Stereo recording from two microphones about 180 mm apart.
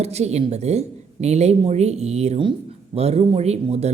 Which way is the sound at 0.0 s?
35° right (ahead or behind).